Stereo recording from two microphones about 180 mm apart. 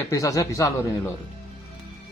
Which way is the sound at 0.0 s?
20° left (ahead or behind).